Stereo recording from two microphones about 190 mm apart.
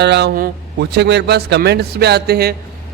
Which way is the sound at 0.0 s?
60° right (ahead or behind).